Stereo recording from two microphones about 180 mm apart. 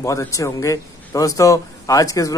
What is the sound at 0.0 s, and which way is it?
Speech, 15° left (ahead or behind).